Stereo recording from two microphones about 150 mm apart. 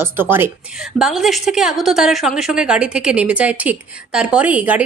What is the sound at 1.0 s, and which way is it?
A woman's voice, centre (ahead or behind).